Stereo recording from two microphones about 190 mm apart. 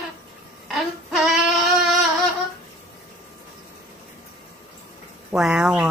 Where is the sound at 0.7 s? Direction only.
Centre (ahead or behind).